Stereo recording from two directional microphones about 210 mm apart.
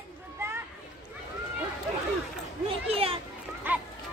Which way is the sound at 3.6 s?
10° right (ahead or behind).